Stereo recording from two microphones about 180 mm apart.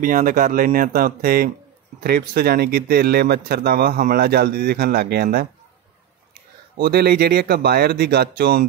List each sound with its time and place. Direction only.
0.0 s speech: 50° right (ahead or behind)
6.8 s speech: 60° right (ahead or behind)